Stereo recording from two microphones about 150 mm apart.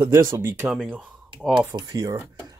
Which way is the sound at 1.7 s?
25° right (ahead or behind).